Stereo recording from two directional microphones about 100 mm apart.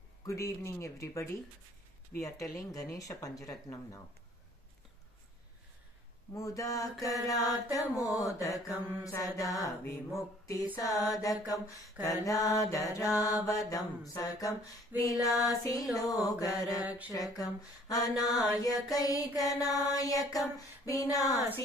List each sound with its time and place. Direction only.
0.2 s mantra: 30° left (ahead or behind)
6.3 s mantra: 35° left (ahead or behind)
14.9 s a sound: 20° right (ahead or behind)
15.3 s mantra: 35° left (ahead or behind)
16.4 s mantra: centre (ahead or behind)
17.1 s mantra: 35° left (ahead or behind)